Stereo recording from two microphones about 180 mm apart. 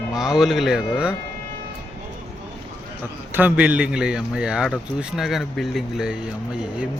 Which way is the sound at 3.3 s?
10° right (ahead or behind).